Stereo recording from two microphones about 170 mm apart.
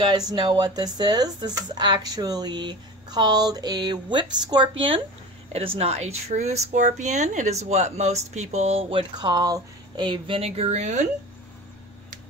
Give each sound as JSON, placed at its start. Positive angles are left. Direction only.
{"t": 0.0, "sound": "speech", "side_deg": -25}
{"t": 9.1, "sound": "speech", "side_deg": -25}